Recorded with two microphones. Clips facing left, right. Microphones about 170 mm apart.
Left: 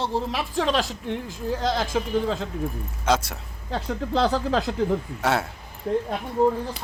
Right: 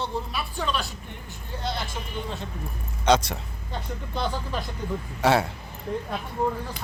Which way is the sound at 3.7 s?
90° left.